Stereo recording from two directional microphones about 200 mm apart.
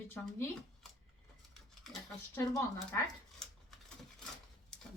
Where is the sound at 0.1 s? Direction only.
10° left (ahead or behind).